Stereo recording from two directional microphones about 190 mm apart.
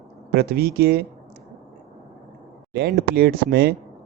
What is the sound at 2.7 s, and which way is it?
Speech, 60° right (ahead or behind).